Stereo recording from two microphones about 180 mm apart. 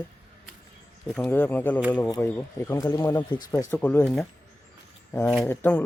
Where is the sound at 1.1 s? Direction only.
10° left (ahead or behind).